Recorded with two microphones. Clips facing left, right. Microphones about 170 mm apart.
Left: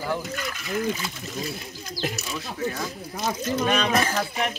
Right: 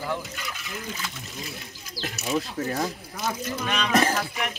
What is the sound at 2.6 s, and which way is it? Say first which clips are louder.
Speech: right 1 dB; 40° right (ahead or behind).